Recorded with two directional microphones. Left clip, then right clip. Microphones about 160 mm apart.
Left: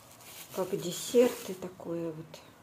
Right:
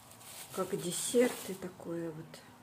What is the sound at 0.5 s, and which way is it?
Speech, centre (ahead or behind).